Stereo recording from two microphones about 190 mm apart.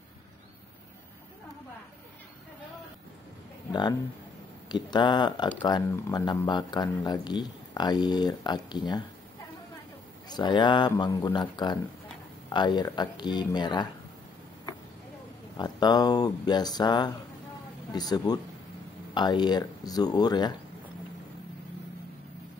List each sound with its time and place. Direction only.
4.6 s speech: 20° left (ahead or behind)
10.2 s speech: 20° left (ahead or behind)
15.5 s speech: 20° left (ahead or behind)